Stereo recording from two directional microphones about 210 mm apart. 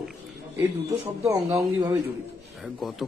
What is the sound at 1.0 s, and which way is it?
Speech, 15° right (ahead or behind).